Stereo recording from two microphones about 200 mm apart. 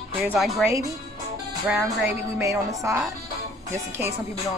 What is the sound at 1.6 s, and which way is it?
Speech, 5° right (ahead or behind).